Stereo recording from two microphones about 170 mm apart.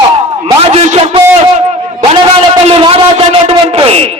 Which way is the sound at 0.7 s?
40° right (ahead or behind).